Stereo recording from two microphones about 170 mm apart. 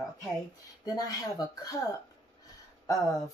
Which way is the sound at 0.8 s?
25° left (ahead or behind).